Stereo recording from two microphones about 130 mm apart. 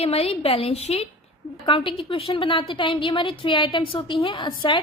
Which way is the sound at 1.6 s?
40° left (ahead or behind).